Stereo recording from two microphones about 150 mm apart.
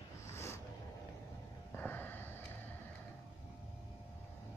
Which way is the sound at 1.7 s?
15° left (ahead or behind).